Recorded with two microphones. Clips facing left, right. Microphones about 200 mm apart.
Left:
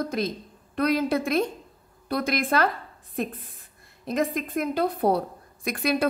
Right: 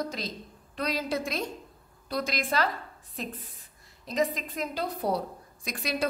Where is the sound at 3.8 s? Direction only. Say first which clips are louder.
Left 2 dB; 55° left (ahead or behind).